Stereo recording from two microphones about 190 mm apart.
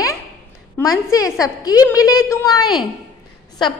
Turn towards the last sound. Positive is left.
turn(degrees=25)  # may be behind; listen again after turning